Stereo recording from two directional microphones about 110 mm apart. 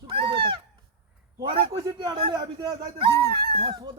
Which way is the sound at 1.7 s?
35° right (ahead or behind).